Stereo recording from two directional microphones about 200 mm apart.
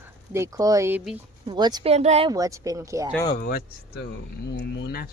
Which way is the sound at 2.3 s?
15° right (ahead or behind).